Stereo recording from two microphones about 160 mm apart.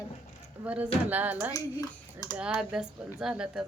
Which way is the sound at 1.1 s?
10° right (ahead or behind).